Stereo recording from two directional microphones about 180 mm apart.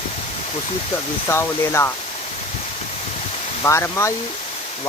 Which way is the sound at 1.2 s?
15° left (ahead or behind).